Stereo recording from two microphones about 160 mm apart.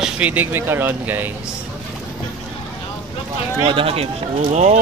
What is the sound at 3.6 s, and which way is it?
Speech, 35° right (ahead or behind).